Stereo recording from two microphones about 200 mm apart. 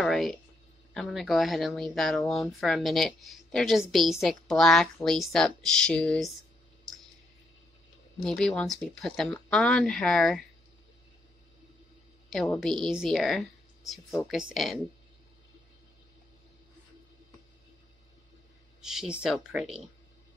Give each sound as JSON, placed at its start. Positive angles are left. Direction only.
{"t": 0.0, "sound": "a sound", "side_deg": 0}
{"t": 0.9, "sound": "speech", "side_deg": 0}
{"t": 8.2, "sound": "speech", "side_deg": 0}
{"t": 12.3, "sound": "speech", "side_deg": 0}
{"t": 18.8, "sound": "speech", "side_deg": 0}